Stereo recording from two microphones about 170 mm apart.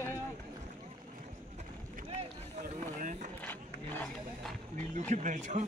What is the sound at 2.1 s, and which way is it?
Run, 50° right (ahead or behind).